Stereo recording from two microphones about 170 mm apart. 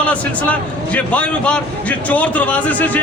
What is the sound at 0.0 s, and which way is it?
A man's voice, 10° left (ahead or behind).